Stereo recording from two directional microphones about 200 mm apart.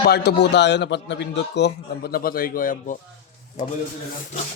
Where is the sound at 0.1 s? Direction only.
55° left (ahead or behind); by 3.7 s 40° left (ahead or behind).